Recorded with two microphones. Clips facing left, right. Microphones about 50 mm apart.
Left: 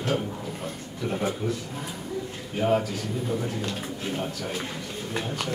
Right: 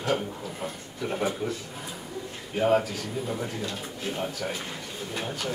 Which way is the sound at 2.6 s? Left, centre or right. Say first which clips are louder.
Right 1 dB; centre.